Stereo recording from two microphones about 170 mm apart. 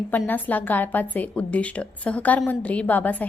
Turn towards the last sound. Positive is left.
turn(degrees=10)  # may be behind; listen again after turning